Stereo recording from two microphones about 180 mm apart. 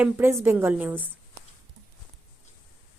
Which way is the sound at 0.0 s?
15° right (ahead or behind).